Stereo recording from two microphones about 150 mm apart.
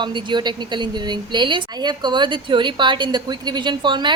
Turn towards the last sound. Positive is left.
turn(degrees=-30)  # may be behind; listen again after turning